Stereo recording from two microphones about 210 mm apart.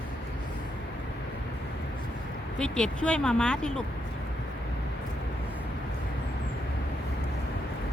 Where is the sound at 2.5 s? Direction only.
5° left (ahead or behind).